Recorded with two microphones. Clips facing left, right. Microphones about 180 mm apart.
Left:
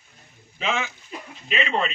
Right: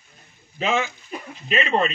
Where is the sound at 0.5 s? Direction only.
40° right (ahead or behind).